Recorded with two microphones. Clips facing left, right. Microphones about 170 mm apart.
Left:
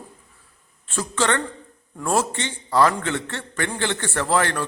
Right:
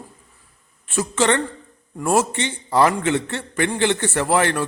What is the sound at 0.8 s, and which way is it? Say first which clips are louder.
A man's voice: right 4 dB; 15° right (ahead or behind).